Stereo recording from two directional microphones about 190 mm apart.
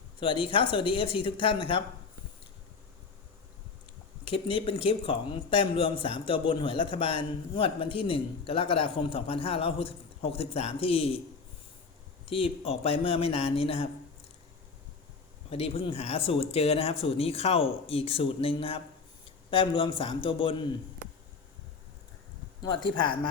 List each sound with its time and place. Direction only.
0.4 s speech: 25° left (ahead or behind)
4.3 s speech: 30° left (ahead or behind)
12.2 s speech: 30° left (ahead or behind)
15.4 s speech: 30° left (ahead or behind)
22.6 s speech: 25° left (ahead or behind)